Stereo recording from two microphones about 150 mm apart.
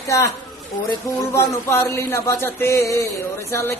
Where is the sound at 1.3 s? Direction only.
20° left (ahead or behind).